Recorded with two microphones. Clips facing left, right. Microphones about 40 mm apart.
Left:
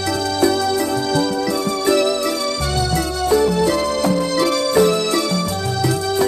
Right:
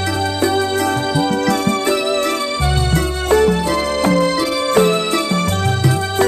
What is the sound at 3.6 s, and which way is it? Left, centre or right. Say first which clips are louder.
Music: left 1 dB; right.